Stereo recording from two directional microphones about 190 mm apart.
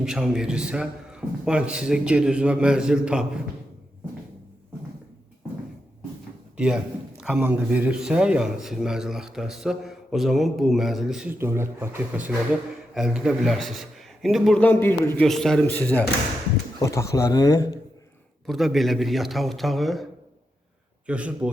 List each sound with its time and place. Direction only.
0.0 s a man's voice: 5° right (ahead or behind)
6.6 s a man's voice: 5° right (ahead or behind)
12.9 s a man's voice: centre (ahead or behind); by 17.7 s 15° left (ahead or behind)
18.4 s a man's voice: centre (ahead or behind)
21.1 s a man's voice: 5° right (ahead or behind)